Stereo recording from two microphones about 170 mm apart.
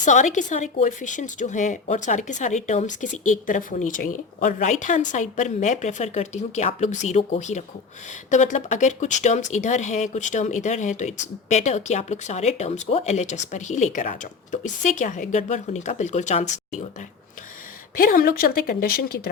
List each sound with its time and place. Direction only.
0.0 s speech: 45° left (ahead or behind)
17.9 s speech: 60° left (ahead or behind)